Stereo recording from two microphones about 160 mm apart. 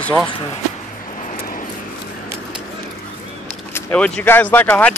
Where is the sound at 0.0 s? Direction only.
5° left (ahead or behind).